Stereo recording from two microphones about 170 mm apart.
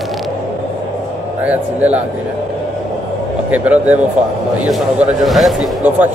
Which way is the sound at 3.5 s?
10° right (ahead or behind).